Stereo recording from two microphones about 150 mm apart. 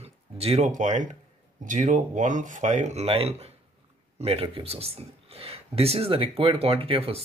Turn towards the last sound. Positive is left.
turn(degrees=-40)  # may be behind; listen again after turning